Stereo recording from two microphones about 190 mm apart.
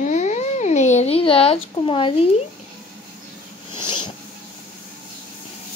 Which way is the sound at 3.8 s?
25° left (ahead or behind).